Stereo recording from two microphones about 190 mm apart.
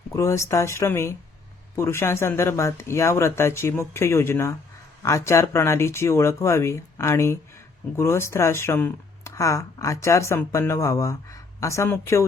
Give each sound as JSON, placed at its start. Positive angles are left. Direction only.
{"t": 0.1, "sound": "speech", "side_deg": 15}